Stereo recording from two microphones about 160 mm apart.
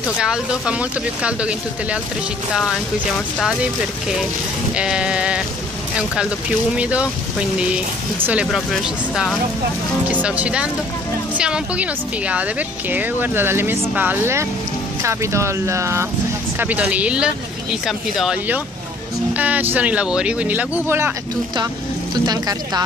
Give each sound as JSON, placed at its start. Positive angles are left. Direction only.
{"t": 0.2, "sound": "speech", "side_deg": -5}
{"t": 3.6, "sound": "speech", "side_deg": -5}
{"t": 6.8, "sound": "speech", "side_deg": -10}
{"t": 22.2, "sound": "speech", "side_deg": -25}